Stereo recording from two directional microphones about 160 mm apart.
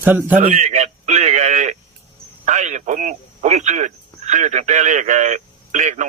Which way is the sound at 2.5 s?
45° right (ahead or behind).